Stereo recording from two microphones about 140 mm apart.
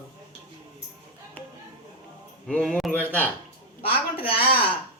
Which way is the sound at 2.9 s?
10° left (ahead or behind).